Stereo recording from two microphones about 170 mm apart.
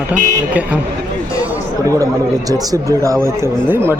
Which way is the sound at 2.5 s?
20° right (ahead or behind).